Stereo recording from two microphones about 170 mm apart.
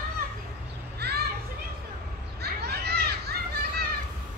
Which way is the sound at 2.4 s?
70° right (ahead or behind).